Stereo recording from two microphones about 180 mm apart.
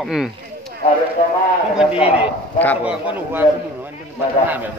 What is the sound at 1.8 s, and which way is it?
A man's voice, 5° right (ahead or behind).